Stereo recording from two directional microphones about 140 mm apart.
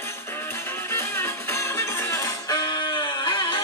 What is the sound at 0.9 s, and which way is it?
Music, 15° left (ahead or behind).